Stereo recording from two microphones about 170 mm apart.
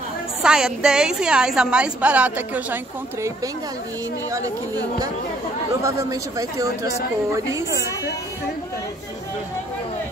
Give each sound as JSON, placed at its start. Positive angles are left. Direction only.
{"t": 0.4, "sound": "a woman's voice", "side_deg": -5}
{"t": 4.3, "sound": "speech", "side_deg": -20}